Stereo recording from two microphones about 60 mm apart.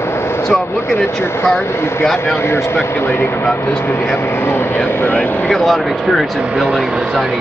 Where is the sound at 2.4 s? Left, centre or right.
Left.